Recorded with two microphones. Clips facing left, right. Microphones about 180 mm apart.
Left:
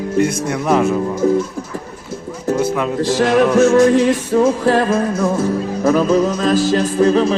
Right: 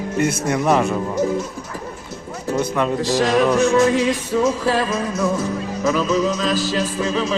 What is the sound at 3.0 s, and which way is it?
Music, 55° left (ahead or behind).